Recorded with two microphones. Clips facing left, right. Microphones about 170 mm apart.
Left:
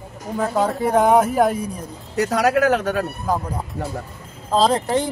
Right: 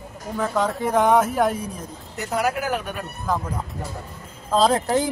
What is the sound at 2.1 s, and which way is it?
Speech, 85° left.